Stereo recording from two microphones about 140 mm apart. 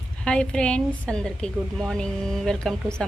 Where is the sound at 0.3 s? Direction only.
5° left (ahead or behind).